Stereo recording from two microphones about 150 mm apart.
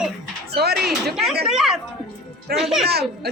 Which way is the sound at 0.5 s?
90° right.